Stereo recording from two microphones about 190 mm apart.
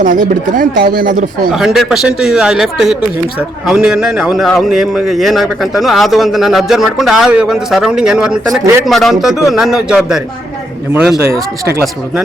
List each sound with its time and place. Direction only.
0.0 s speech: 45° right (ahead or behind)
1.5 s a man's voice: centre (ahead or behind)